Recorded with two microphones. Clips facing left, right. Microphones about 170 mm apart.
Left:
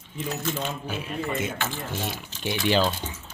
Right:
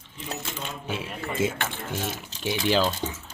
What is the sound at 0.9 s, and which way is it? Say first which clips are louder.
Speech: even; 90° right.